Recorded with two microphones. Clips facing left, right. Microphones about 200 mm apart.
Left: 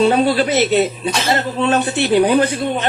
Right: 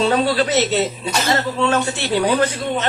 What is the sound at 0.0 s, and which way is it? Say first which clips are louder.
Speech: left 3 dB; 15° left (ahead or behind).